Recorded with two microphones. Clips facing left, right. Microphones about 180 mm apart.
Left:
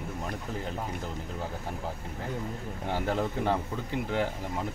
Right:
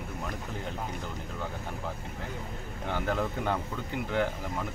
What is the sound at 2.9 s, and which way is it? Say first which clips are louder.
Speech: left 1 dB; 30° left (ahead or behind).